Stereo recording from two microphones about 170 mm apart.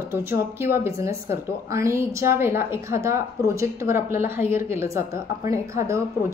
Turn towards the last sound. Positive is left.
turn(degrees=-15)  # may be behind; listen again after turning